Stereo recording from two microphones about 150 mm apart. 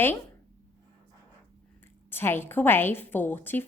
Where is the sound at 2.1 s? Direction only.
15° left (ahead or behind).